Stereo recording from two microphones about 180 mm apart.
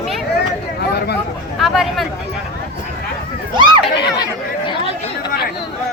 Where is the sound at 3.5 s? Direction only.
25° right (ahead or behind).